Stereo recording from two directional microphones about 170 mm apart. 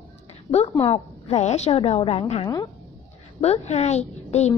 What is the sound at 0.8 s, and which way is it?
A woman's voice, 35° left (ahead or behind).